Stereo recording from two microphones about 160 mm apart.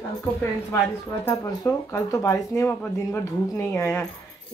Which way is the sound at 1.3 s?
20° left (ahead or behind).